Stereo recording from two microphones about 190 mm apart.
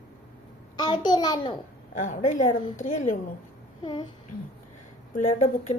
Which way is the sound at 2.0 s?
40° left (ahead or behind).